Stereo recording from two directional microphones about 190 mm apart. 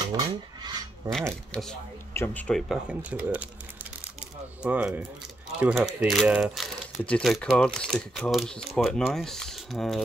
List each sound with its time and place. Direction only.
0.0 s dishes: 20° right (ahead or behind)
0.3 s a sound: 20° right (ahead or behind)
1.5 s speech: 5° left (ahead or behind)
4.6 s speech: 5° right (ahead or behind)